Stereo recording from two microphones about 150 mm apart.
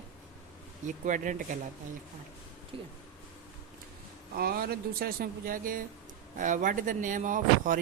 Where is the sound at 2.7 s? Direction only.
35° right (ahead or behind).